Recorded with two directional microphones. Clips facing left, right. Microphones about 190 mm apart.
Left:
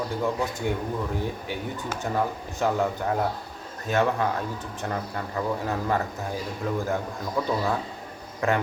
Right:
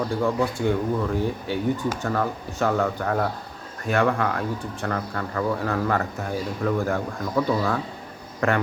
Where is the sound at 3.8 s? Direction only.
20° left (ahead or behind).